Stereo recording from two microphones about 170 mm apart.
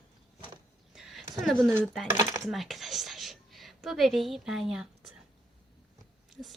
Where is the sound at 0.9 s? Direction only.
Centre (ahead or behind).